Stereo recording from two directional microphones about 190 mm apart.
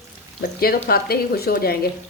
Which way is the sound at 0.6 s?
55° left (ahead or behind).